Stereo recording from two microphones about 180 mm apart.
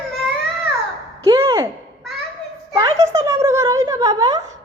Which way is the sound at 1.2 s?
15° right (ahead or behind).